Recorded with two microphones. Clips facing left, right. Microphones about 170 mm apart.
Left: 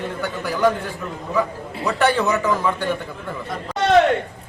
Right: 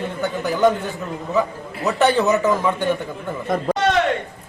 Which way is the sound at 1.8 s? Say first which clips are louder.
Right 2 dB; 20° right (ahead or behind).